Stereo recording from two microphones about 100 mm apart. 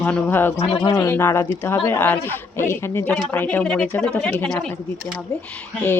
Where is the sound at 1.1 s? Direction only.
20° left (ahead or behind); by 4.7 s 5° left (ahead or behind).